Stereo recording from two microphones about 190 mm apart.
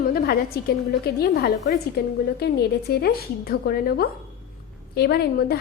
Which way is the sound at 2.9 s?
55° left (ahead or behind).